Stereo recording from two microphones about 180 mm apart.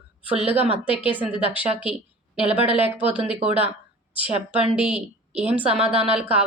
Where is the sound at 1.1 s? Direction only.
10° right (ahead or behind).